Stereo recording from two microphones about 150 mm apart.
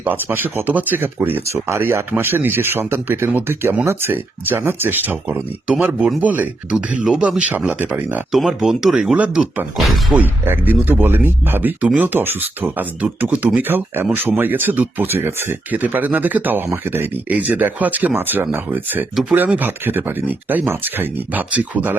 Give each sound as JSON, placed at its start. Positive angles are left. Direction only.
{"t": 0.0, "sound": "speech", "side_deg": -15}